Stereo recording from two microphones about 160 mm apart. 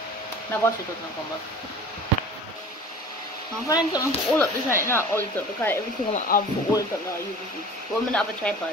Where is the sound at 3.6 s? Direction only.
25° left (ahead or behind).